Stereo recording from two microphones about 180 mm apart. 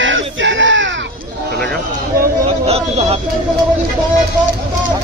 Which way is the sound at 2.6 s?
35° right (ahead or behind).